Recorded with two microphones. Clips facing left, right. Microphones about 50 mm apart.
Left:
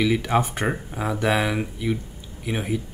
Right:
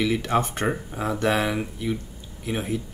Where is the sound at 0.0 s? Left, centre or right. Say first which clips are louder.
Left 2 dB; centre.